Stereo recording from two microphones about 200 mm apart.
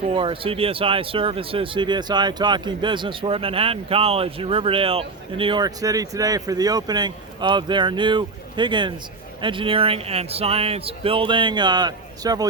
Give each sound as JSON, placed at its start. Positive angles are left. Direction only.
{"t": 0.1, "sound": "speech", "side_deg": -25}